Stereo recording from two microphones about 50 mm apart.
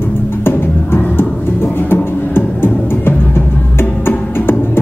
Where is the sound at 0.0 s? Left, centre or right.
Left.